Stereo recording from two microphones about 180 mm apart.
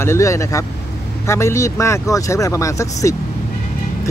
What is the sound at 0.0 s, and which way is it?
Speech, 15° left (ahead or behind).